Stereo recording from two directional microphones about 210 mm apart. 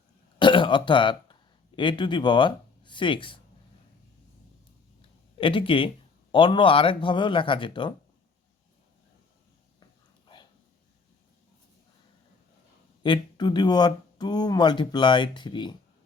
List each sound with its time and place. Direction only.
0.3 s speech: 25° left (ahead or behind)
5.4 s speech: 25° left (ahead or behind)
13.0 s speech: 20° left (ahead or behind)